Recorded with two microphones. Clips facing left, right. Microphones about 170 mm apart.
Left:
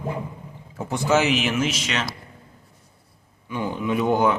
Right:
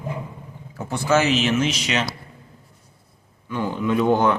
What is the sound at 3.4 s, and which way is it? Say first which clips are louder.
Speech: right 2 dB; 15° left (ahead or behind).